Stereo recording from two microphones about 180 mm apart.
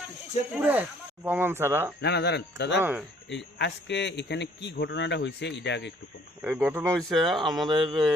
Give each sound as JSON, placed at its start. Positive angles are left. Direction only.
{"t": 0.6, "sound": "speech", "side_deg": -10}
{"t": 2.0, "sound": "a man's voice", "side_deg": 70}
{"t": 6.4, "sound": "speech", "side_deg": -10}
{"t": 7.1, "sound": "speech", "side_deg": 0}
{"t": 7.3, "sound": "speech", "side_deg": -25}